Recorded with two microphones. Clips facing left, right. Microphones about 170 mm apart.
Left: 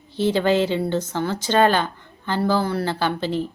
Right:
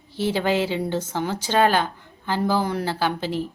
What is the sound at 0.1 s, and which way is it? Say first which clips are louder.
A woman's voice: left 3 dB; 10° right (ahead or behind).